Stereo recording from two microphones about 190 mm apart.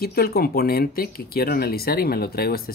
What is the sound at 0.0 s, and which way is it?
Speech, 55° left (ahead or behind).